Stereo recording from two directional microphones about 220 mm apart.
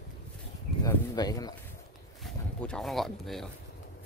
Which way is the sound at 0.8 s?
15° left (ahead or behind).